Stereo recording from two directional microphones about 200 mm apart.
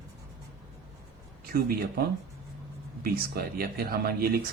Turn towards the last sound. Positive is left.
turn(degrees=-50)  # may be behind; listen again after turning